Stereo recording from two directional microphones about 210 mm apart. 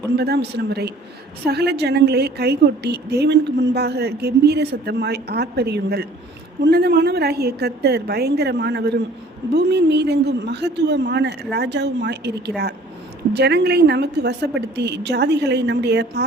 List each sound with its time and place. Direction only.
0.2 s a woman's voice: 50° right (ahead or behind)